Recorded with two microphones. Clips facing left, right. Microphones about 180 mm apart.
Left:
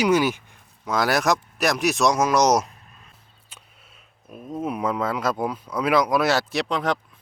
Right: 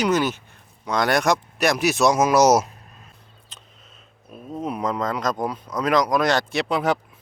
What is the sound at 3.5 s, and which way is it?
Speech, 10° left (ahead or behind).